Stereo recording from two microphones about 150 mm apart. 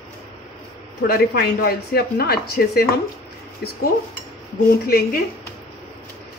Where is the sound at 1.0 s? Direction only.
85° left.